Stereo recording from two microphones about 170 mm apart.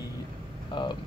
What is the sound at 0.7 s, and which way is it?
Speech, 25° left (ahead or behind).